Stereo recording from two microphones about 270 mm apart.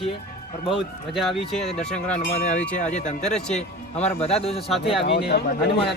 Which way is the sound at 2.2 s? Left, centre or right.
Left.